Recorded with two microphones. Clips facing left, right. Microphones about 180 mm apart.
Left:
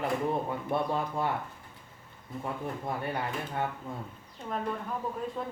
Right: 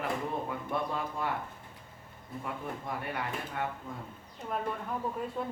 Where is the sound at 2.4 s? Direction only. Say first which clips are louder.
Left 4 dB; 30° left (ahead or behind).